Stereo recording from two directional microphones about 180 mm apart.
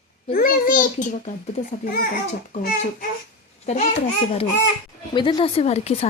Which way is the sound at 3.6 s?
40° left (ahead or behind).